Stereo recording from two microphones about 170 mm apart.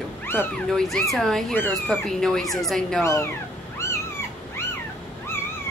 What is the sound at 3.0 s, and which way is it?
Speech, 15° left (ahead or behind).